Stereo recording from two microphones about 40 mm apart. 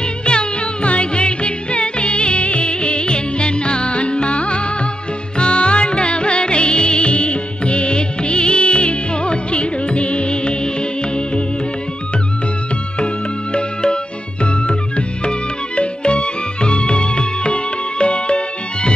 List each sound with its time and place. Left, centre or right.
0.2 s music: left
13.0 s music: left